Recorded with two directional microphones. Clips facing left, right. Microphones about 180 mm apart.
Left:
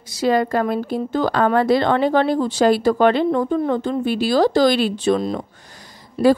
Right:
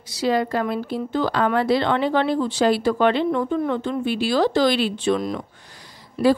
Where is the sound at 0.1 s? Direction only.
50° left (ahead or behind).